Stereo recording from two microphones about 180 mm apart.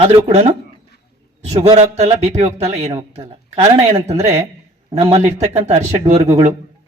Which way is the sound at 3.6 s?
40° right (ahead or behind).